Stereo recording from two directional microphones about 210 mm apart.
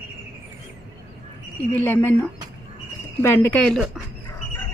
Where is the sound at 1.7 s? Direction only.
10° left (ahead or behind).